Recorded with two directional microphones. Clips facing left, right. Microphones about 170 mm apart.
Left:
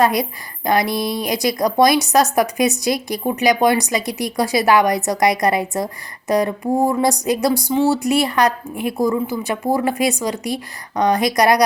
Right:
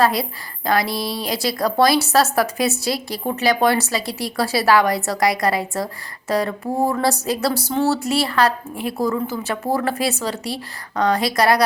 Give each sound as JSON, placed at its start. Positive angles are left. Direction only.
{"t": 0.0, "sound": "a woman's voice", "side_deg": 15}